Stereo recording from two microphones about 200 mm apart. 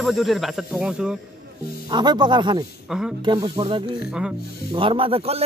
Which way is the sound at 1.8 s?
20° right (ahead or behind).